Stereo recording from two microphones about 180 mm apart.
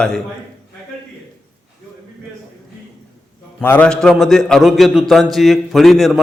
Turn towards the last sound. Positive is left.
turn(degrees=0)  # may be behind; listen again after turning